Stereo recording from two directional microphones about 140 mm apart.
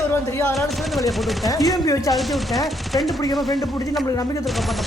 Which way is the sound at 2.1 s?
Centre (ahead or behind).